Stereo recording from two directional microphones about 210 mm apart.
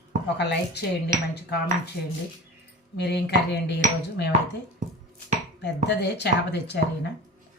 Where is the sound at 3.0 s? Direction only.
50° left (ahead or behind).